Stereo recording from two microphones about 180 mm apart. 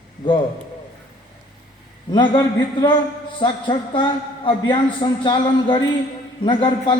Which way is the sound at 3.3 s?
25° left (ahead or behind).